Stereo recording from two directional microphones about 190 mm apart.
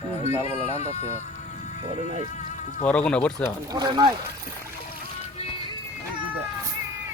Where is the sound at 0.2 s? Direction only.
30° left (ahead or behind).